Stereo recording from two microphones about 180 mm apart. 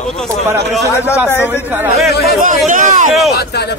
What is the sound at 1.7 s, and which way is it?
Speech, 10° right (ahead or behind).